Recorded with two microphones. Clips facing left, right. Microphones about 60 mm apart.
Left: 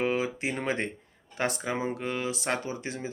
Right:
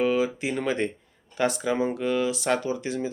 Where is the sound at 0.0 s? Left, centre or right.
Left.